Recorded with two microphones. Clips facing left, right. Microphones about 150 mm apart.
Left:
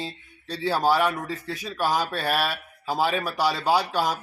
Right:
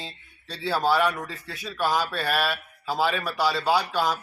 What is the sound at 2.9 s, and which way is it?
Speech, 45° left (ahead or behind).